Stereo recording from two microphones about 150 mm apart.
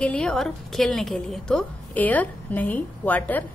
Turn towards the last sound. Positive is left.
turn(degrees=10)  # may be behind; listen again after turning